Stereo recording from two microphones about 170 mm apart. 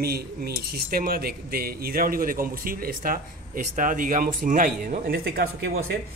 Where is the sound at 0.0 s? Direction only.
65° right (ahead or behind).